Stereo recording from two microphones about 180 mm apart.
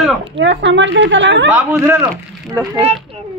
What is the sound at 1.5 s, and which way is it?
Speech, 10° right (ahead or behind).